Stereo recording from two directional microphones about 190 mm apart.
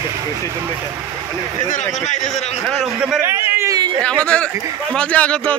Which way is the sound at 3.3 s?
15° right (ahead or behind).